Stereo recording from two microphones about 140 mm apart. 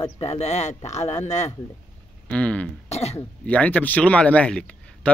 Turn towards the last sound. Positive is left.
turn(degrees=10)  # may be behind; listen again after turning